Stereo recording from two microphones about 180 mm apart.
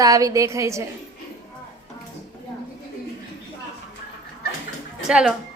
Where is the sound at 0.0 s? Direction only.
20° right (ahead or behind).